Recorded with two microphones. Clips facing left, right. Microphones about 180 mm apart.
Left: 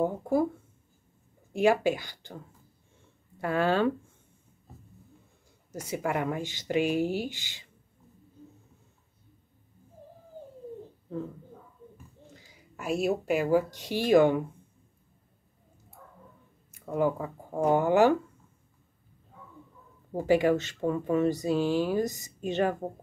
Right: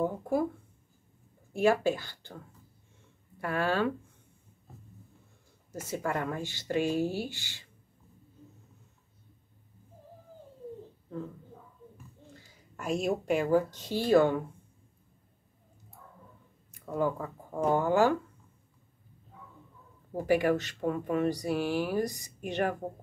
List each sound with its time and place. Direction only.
0.0 s speech: 20° left (ahead or behind)
1.5 s speech: 15° left (ahead or behind)
3.3 s speech: 25° left (ahead or behind)
5.7 s speech: 15° left (ahead or behind)
12.4 s speech: 10° left (ahead or behind)
16.8 s speech: 15° left (ahead or behind)
20.1 s speech: 20° left (ahead or behind)